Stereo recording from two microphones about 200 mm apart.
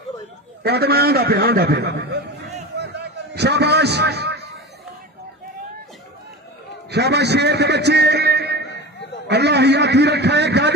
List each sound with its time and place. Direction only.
0.7 s a man's voice: 50° right (ahead or behind)
2.8 s a sound: 55° right (ahead or behind)
6.9 s a man's voice: 55° right (ahead or behind)